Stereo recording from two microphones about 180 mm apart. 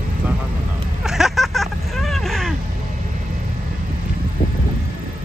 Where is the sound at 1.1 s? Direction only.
Centre (ahead or behind).